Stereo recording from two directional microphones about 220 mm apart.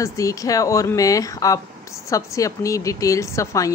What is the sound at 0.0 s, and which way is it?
Speech, 15° left (ahead or behind).